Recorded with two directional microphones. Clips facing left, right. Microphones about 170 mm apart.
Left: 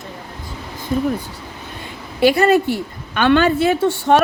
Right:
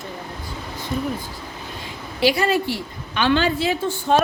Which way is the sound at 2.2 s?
55° left (ahead or behind).